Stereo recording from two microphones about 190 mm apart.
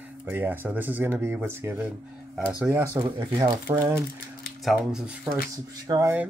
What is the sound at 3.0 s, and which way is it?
Speech, 25° right (ahead or behind).